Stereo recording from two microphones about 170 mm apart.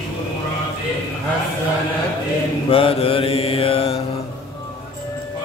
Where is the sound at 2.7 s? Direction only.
35° left (ahead or behind).